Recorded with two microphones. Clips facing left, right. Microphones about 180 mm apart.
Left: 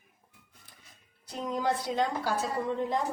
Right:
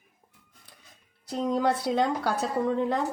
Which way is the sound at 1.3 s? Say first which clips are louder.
Right 5 dB; 75° right (ahead or behind).